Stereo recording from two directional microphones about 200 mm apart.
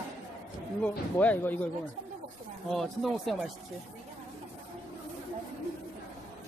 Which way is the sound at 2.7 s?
Centre (ahead or behind).